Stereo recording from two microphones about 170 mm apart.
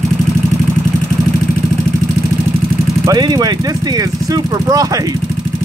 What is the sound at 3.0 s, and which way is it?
Speech, 25° right (ahead or behind).